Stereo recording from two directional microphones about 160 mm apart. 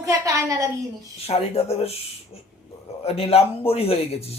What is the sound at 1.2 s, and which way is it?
Speech, 40° left (ahead or behind).